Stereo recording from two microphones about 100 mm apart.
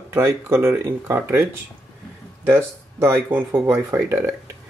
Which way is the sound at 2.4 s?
25° right (ahead or behind).